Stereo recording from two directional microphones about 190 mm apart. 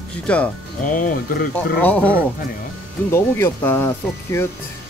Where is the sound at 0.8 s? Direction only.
45° left (ahead or behind).